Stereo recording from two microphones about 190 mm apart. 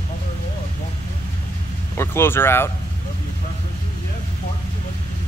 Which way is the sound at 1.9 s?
10° left (ahead or behind).